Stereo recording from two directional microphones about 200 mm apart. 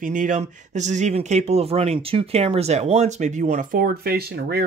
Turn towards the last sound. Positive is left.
turn(degrees=-50)  # may be behind; listen again after turning